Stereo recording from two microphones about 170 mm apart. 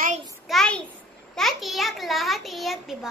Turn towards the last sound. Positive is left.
turn(degrees=0)  # may be behind; listen again after turning